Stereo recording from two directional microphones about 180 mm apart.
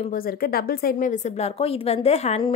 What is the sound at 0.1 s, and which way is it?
A woman's voice, 55° left (ahead or behind).